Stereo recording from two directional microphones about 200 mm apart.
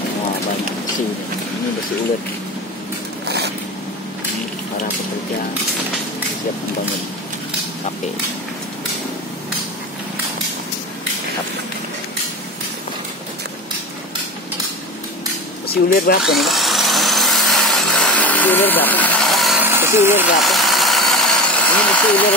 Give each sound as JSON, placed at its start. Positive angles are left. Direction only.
{"t": 3.3, "sound": "a sound", "side_deg": -55}
{"t": 15.7, "sound": "speech", "side_deg": 50}
{"t": 16.3, "sound": "tools", "side_deg": 0}
{"t": 20.3, "sound": "engine", "side_deg": 0}